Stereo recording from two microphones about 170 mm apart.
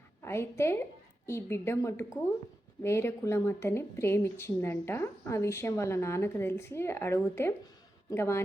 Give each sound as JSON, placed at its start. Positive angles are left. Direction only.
{"t": 0.2, "sound": "a woman's voice", "side_deg": 15}